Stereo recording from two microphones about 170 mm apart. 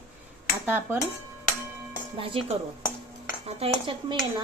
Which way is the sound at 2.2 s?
35° right (ahead or behind).